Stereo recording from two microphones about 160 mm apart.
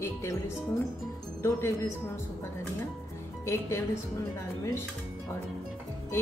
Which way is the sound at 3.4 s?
15° left (ahead or behind).